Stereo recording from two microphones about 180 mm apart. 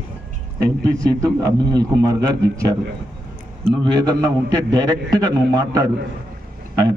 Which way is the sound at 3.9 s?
25° right (ahead or behind).